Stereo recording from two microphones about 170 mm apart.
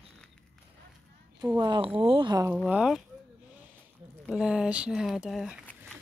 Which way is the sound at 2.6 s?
5° right (ahead or behind).